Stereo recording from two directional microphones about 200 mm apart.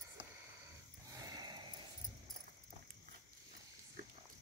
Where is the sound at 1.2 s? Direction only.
20° right (ahead or behind).